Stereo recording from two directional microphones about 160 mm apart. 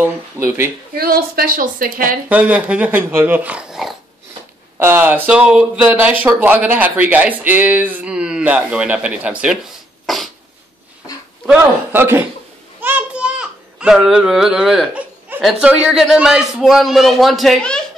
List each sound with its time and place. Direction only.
0.0 s speech: 10° right (ahead or behind)
0.9 s a woman's voice: 75° right (ahead or behind)
2.2 s speech: 10° right (ahead or behind)
10.0 s a sound: centre (ahead or behind)
11.4 s speech: 10° right (ahead or behind)
12.8 s child singing: 10° right (ahead or behind)
15.4 s a man's voice: 5° right (ahead or behind)